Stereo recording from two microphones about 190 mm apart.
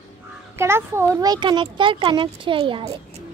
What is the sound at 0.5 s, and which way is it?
A child's voice, 15° right (ahead or behind).